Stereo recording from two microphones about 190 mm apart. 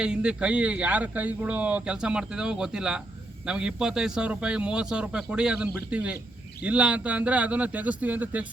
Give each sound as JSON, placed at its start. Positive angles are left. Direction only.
{"t": 0.0, "sound": "speech", "side_deg": -5}